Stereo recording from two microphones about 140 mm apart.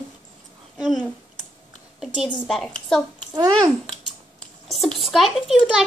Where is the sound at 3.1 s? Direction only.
30° right (ahead or behind).